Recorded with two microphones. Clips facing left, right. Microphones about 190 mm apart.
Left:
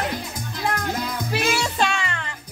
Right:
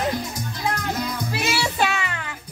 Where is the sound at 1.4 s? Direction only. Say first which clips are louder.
Left 1 dB; 5° right (ahead or behind).